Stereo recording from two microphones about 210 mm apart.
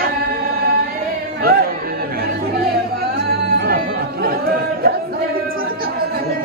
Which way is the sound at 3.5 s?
45° right (ahead or behind).